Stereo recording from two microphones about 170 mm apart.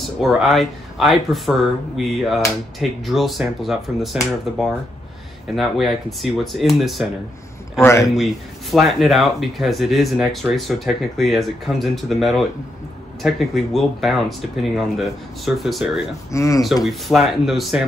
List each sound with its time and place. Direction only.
0.0 s speech: centre (ahead or behind)
7.8 s a man's voice: 15° left (ahead or behind)
8.6 s speech: centre (ahead or behind)
13.7 s speech: centre (ahead or behind)
16.3 s speech: 20° left (ahead or behind)
16.8 s speech: centre (ahead or behind)